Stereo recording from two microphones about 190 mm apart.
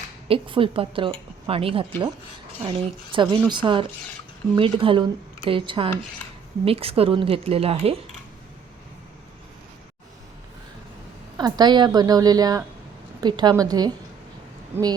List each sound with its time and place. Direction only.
0.3 s a woman's voice: 25° right (ahead or behind)
11.3 s a woman's voice: 20° right (ahead or behind)